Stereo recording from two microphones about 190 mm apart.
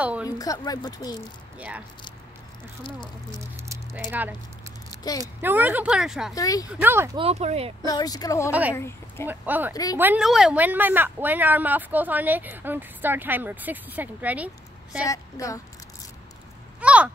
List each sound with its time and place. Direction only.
0.0 s a woman's voice: 5° right (ahead or behind)
0.4 s speech: 20° left (ahead or behind)
2.8 s speech: 25° left (ahead or behind)
3.6 s rattle: 15° right (ahead or behind)
4.1 s a woman's voice: 10° right (ahead or behind)
6.3 s speech: 20° left (ahead or behind)
6.8 s a woman's voice: 10° right (ahead or behind)
7.2 s speech: 35° right (ahead or behind)
7.8 s speech: 20° left (ahead or behind)
8.5 s a woman's voice: 10° right (ahead or behind)
8.7 s speech: 15° left (ahead or behind)
9.3 s a woman's voice: 10° right (ahead or behind)
15.0 s speech: 15° left (ahead or behind)
16.8 s a sound: 5° right (ahead or behind)